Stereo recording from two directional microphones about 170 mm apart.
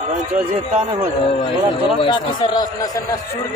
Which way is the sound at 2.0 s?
25° left (ahead or behind).